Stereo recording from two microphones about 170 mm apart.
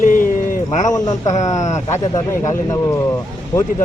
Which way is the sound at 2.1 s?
20° left (ahead or behind).